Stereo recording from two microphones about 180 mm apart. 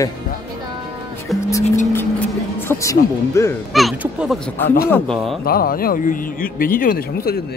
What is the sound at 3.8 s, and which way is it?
Speech, centre (ahead or behind).